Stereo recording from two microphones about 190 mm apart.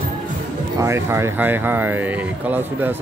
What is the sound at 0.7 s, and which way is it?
Speech, 15° right (ahead or behind).